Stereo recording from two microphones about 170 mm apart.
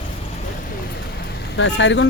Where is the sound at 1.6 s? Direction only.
90° left.